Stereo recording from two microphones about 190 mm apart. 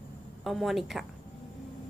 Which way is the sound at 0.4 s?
Centre (ahead or behind).